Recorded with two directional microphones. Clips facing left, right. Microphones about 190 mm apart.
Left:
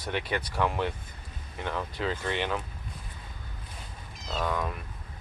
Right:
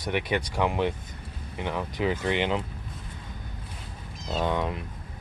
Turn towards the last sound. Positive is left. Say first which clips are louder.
# right 4 dB
turn(degrees=-20)  # may be behind; listen again after turning